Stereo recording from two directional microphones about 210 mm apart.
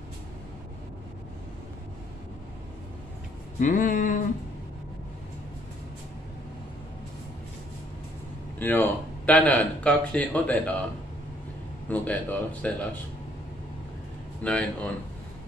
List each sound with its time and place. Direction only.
3.5 s a sound: 40° left (ahead or behind)
8.5 s speech: 10° left (ahead or behind)
11.9 s speech: 5° left (ahead or behind)
14.4 s speech: 5° left (ahead or behind)